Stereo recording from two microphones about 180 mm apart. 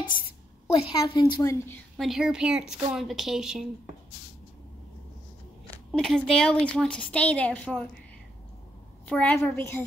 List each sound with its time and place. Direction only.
0.7 s a woman's voice: 25° left (ahead or behind)
2.0 s a woman's voice: centre (ahead or behind)
5.9 s a woman's voice: centre (ahead or behind)
9.0 s a woman's voice: 10° left (ahead or behind)